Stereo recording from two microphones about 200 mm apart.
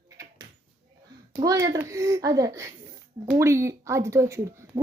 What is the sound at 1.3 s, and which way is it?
Speech, 15° right (ahead or behind).